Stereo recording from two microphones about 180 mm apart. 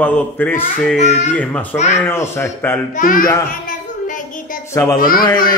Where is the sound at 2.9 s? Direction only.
50° left (ahead or behind).